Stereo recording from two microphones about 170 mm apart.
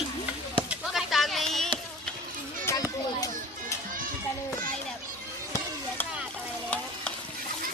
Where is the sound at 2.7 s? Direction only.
20° left (ahead or behind).